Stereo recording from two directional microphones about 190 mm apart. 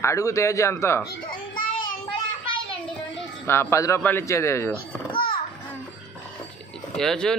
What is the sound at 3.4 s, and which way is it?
A child's voice, 15° left (ahead or behind).